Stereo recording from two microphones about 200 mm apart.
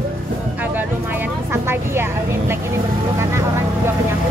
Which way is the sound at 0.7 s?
10° right (ahead or behind).